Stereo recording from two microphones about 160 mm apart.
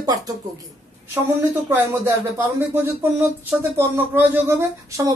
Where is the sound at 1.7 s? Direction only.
15° right (ahead or behind).